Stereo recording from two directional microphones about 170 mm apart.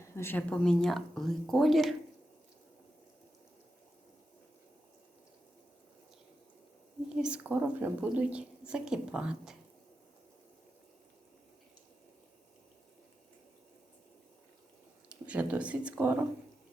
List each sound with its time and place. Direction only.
0.0 s a woman's voice: 15° left (ahead or behind)
7.2 s a woman's voice: 5° right (ahead or behind)
15.1 s speech: 5° right (ahead or behind)